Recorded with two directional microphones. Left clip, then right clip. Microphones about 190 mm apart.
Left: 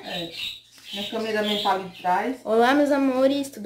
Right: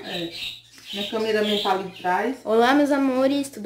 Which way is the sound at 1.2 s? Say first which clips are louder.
Right 2 dB; centre (ahead or behind).